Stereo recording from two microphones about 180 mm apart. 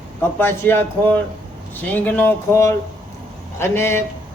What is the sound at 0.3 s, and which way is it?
Speech, 10° left (ahead or behind).